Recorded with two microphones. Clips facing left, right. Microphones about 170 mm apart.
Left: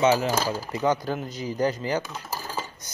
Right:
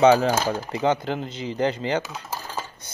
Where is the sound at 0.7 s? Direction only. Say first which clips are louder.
Right 1 dB; 25° right (ahead or behind).